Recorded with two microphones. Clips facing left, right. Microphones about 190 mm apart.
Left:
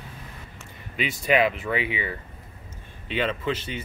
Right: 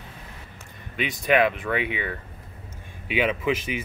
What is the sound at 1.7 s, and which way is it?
Speech, 55° right (ahead or behind).